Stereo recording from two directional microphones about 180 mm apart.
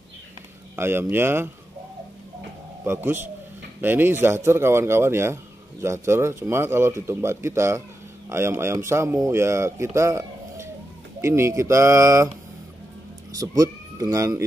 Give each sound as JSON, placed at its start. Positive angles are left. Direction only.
{"t": 0.7, "sound": "speech", "side_deg": -10}
{"t": 2.8, "sound": "speech", "side_deg": -10}
{"t": 13.3, "sound": "speech", "side_deg": -20}